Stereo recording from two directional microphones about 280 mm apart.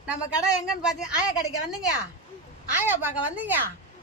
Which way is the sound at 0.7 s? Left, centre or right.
Centre.